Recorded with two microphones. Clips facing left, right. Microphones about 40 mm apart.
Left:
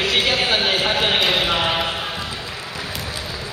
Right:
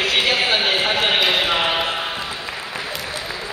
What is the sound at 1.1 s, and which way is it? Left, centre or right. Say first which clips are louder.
Basketball bounce: right 1 dB; centre.